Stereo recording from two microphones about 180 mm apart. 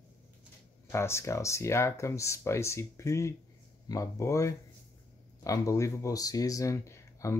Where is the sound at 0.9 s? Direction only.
15° left (ahead or behind).